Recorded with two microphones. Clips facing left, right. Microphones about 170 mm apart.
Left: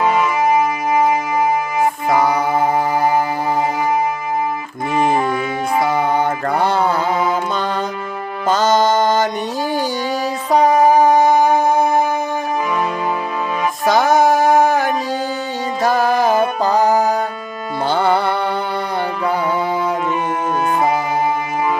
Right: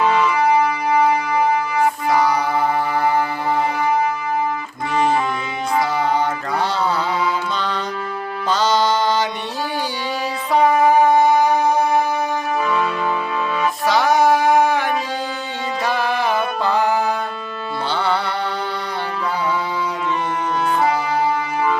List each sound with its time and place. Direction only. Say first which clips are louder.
0.0 s music: left 1 dB; 20° left (ahead or behind)
2.4 s music: left 3 dB; 20° left (ahead or behind)
2.9 s music: left 2 dB; 40° left (ahead or behind)
5.9 s music: left 2 dB; 55° left (ahead or behind)
10.5 s music: left 2 dB; 40° left (ahead or behind)
13.8 s music: left 3 dB; 45° left (ahead or behind)